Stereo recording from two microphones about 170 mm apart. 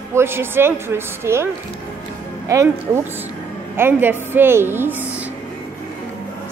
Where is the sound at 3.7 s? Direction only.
15° right (ahead or behind).